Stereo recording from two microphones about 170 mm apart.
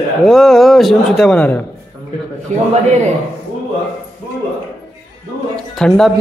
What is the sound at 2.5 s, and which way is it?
Speech, 45° right (ahead or behind).